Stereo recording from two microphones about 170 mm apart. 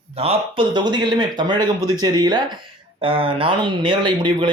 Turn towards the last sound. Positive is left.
turn(degrees=-30)  # may be behind; listen again after turning